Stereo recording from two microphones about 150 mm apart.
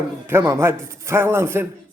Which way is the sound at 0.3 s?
15° right (ahead or behind).